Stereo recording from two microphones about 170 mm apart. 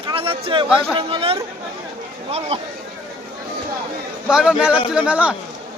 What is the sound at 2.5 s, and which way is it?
Speech, 35° right (ahead or behind).